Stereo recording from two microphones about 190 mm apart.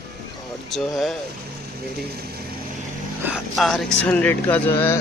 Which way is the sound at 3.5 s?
Centre (ahead or behind).